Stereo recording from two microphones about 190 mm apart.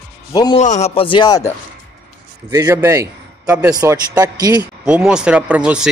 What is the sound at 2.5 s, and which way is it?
A man's voice, 15° right (ahead or behind).